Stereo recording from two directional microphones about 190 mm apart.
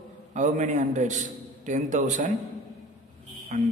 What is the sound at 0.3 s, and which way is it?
A man's voice, 40° right (ahead or behind).